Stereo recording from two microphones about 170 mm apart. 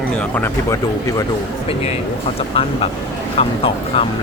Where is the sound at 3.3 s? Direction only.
35° left (ahead or behind).